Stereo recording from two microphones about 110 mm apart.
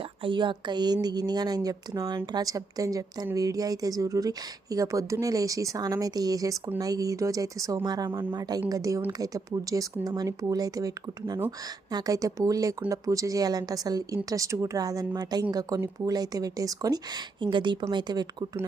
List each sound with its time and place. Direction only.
0.0 s speech: 50° right (ahead or behind)